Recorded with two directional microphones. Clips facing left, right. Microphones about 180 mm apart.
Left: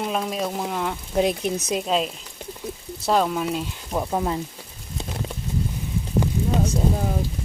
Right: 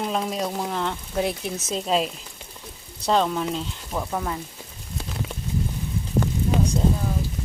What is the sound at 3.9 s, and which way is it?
Speech, 20° left (ahead or behind).